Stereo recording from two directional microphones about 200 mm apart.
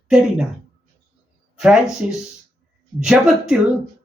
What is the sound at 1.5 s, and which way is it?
Speech, 5° right (ahead or behind).